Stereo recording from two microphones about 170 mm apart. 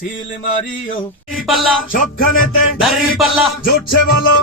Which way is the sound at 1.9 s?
55° left (ahead or behind).